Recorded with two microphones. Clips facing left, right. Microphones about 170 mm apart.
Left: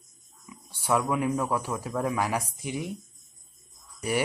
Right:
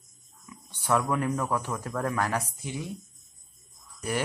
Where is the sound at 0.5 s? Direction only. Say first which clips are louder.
Even; 10° left (ahead or behind).